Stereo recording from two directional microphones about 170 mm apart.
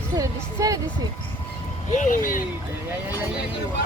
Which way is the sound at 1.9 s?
50° left (ahead or behind).